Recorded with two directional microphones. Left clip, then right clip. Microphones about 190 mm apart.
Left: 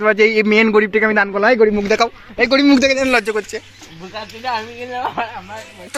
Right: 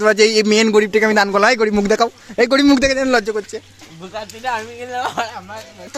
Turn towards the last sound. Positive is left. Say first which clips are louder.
# even
turn(degrees=-15)  # may be behind; listen again after turning